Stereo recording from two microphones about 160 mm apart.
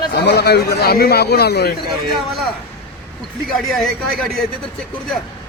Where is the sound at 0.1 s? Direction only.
90° left.